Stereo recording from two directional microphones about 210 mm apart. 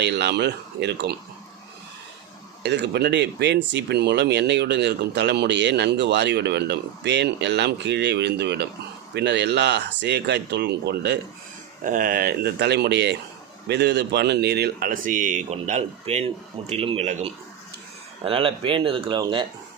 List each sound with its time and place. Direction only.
0.0 s speech: 55° right (ahead or behind)
2.6 s speech: 55° right (ahead or behind)
11.8 s speech: 40° right (ahead or behind); by 19.5 s 20° right (ahead or behind)